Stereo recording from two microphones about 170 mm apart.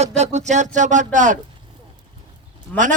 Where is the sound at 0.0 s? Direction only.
40° right (ahead or behind).